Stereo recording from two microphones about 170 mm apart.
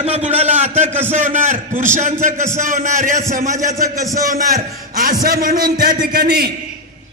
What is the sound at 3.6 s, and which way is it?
Speech, 20° right (ahead or behind).